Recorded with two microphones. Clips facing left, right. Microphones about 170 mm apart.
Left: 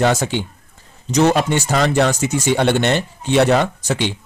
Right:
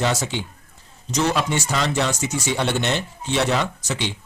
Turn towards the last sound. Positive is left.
turn(degrees=55)  # may be behind; listen again after turning